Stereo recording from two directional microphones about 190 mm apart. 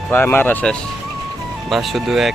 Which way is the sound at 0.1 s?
10° left (ahead or behind).